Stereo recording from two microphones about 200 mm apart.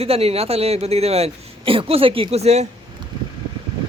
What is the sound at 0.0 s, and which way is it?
Speech, 30° right (ahead or behind).